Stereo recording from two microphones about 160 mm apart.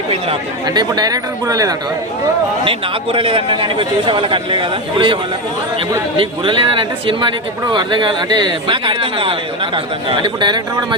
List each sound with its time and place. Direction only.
0.1 s speech: 30° right (ahead or behind)
2.6 s a man's voice: 35° right (ahead or behind)
6.1 s a man's voice: 30° right (ahead or behind)